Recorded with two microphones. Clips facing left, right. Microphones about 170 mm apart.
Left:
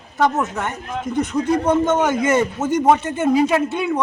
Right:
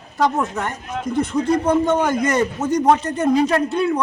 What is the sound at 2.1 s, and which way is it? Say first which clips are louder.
Speech: left 1 dB; 5° left (ahead or behind).